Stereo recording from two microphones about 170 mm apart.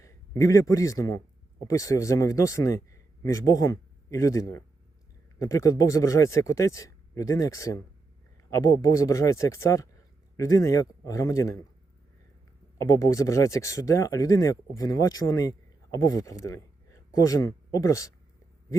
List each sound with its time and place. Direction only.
0.0 s a sound: 20° left (ahead or behind)
0.7 s speech: 20° left (ahead or behind)
12.8 s speech: 20° left (ahead or behind)